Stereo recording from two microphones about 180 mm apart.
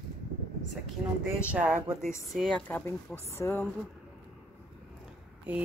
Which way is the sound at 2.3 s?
5° left (ahead or behind).